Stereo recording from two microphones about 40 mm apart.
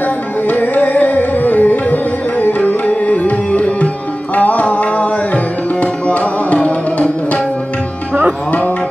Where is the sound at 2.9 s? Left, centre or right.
Left.